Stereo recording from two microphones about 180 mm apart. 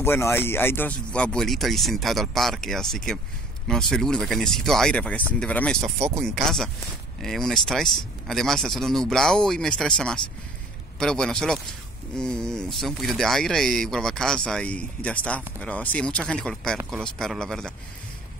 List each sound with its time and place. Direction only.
0.0 s speech: 15° left (ahead or behind)
5.9 s speech: 35° right (ahead or behind)
6.2 s speech: centre (ahead or behind)